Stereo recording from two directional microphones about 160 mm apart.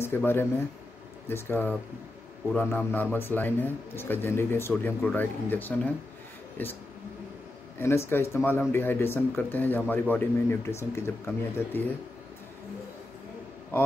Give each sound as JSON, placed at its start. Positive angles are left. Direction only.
{"t": 0.0, "sound": "a man's voice", "side_deg": 15}
{"t": 7.8, "sound": "a man's voice", "side_deg": 15}